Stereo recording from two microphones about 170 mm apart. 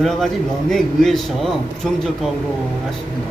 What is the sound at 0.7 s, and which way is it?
Speech, centre (ahead or behind).